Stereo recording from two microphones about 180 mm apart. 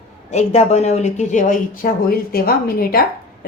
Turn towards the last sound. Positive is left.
turn(degrees=55)  # may be behind; listen again after turning